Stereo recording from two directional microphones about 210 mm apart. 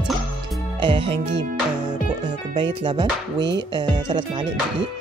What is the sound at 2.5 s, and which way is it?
Speech, 20° right (ahead or behind).